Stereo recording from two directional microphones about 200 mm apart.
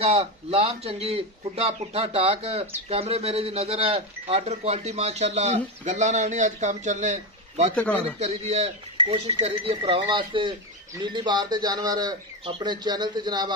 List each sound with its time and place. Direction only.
0.0 s speech: 30° right (ahead or behind)
7.7 s speech: 5° left (ahead or behind)
8.2 s speech: 35° right (ahead or behind)